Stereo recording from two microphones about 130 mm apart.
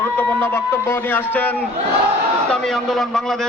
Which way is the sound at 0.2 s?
15° left (ahead or behind).